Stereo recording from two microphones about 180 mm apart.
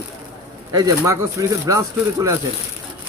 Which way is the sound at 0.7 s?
20° right (ahead or behind).